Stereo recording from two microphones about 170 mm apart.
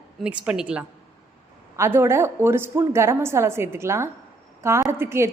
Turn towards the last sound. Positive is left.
turn(degrees=-15)  # may be behind; listen again after turning